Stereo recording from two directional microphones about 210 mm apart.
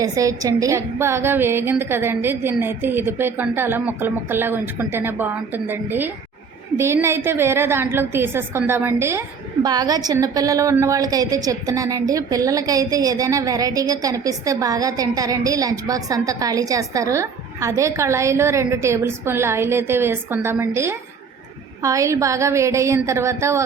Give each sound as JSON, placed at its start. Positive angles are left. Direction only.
{"t": 0.0, "sound": "a woman's voice", "side_deg": -15}